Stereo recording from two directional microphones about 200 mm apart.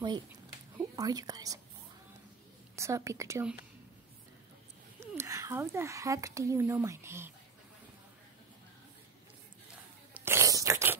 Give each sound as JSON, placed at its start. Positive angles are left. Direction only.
{"t": 0.7, "sound": "speech", "side_deg": -20}
{"t": 2.7, "sound": "speech", "side_deg": -15}
{"t": 5.0, "sound": "speech", "side_deg": -15}
{"t": 10.1, "sound": "biting", "side_deg": -10}